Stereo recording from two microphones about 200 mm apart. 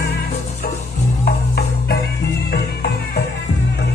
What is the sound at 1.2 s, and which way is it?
Music, 50° left (ahead or behind).